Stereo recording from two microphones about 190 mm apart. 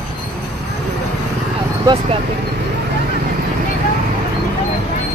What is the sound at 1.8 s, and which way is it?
Speech, 25° right (ahead or behind).